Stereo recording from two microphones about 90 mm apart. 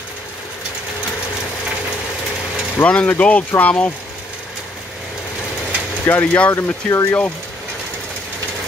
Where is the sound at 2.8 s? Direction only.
15° left (ahead or behind).